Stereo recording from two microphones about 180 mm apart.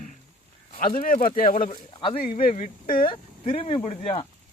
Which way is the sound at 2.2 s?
50° left (ahead or behind).